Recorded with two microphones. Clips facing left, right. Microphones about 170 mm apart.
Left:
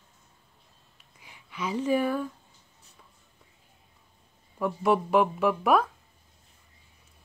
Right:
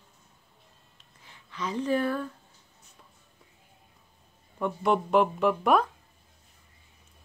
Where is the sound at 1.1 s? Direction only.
10° left (ahead or behind).